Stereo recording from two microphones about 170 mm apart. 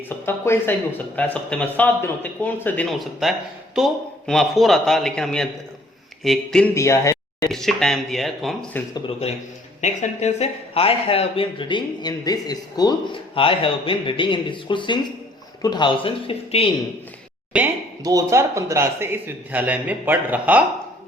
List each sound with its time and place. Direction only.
0.3 s a man's voice: 15° left (ahead or behind)
6.7 s speech: 15° left (ahead or behind)
7.5 s a man's voice: centre (ahead or behind)
8.7 s speech: 10° left (ahead or behind)
9.8 s speech: 45° left (ahead or behind)
17.5 s a man's voice: 5° right (ahead or behind)
18.0 s a man's voice: 20° right (ahead or behind)